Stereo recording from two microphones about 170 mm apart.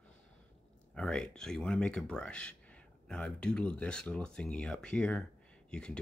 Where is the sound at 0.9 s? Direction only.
5° left (ahead or behind).